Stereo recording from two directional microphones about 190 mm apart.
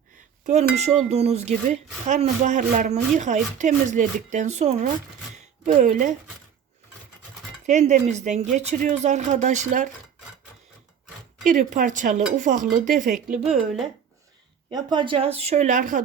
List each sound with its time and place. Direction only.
1.1 s speech: 35° right (ahead or behind)
7.7 s speech: 40° right (ahead or behind)
11.4 s speech: 45° right (ahead or behind)
13.3 s a woman's voice: 5° right (ahead or behind)
14.7 s speech: 20° right (ahead or behind); by 16.0 s 40° right (ahead or behind)